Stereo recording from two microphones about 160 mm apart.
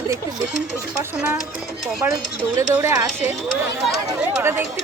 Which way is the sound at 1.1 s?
10° right (ahead or behind).